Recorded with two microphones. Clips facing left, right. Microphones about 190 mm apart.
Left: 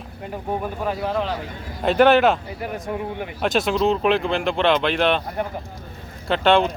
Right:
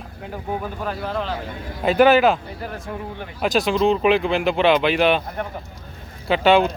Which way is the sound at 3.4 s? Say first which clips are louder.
Right 1 dB; centre (ahead or behind).